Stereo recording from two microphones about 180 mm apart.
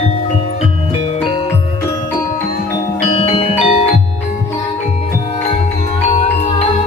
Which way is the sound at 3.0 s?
35° left (ahead or behind).